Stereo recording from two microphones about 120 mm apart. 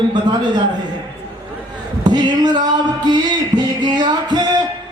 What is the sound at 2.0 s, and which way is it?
A man's voice, 35° right (ahead or behind).